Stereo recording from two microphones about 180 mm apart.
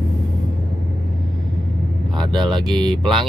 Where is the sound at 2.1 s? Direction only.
25° right (ahead or behind).